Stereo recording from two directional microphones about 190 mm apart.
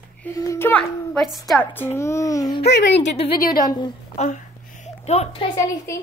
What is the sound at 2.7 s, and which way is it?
Speech, 65° left (ahead or behind).